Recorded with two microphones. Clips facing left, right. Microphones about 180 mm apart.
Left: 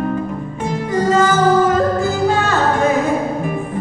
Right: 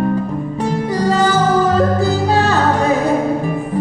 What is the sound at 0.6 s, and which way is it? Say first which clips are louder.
Music: even; 35° right (ahead or behind).